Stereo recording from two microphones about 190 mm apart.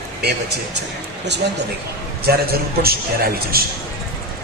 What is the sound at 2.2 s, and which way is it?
A man's voice, 55° right (ahead or behind).